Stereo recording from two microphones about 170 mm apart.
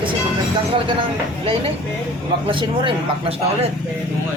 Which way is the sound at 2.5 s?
30° right (ahead or behind).